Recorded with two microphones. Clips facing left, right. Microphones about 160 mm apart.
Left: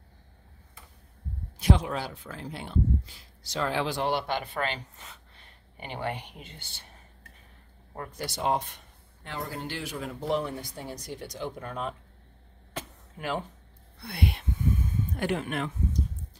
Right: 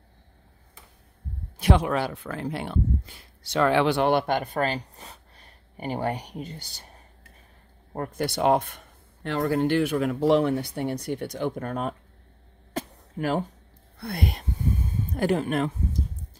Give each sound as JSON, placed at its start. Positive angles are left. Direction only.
{"t": 1.6, "sound": "speech", "side_deg": -65}
{"t": 7.9, "sound": "speech", "side_deg": -50}
{"t": 12.7, "sound": "a sound", "side_deg": -40}
{"t": 13.9, "sound": "speech", "side_deg": -45}